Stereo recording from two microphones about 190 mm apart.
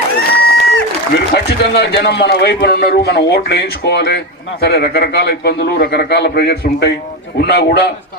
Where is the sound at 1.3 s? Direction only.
60° left (ahead or behind).